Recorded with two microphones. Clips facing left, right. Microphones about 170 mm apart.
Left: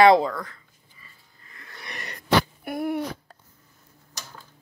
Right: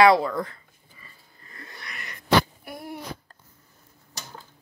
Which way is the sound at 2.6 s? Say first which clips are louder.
Left 10 dB; 60° left (ahead or behind).